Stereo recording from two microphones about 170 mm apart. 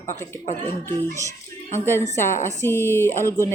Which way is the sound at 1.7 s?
15° left (ahead or behind).